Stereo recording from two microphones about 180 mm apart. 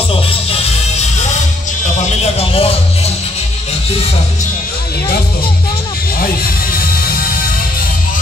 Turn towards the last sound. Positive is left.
turn(degrees=55)  # may be behind; listen again after turning